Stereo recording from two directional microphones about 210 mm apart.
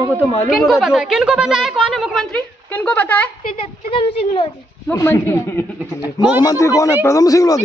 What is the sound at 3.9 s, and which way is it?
Speech, 25° left (ahead or behind).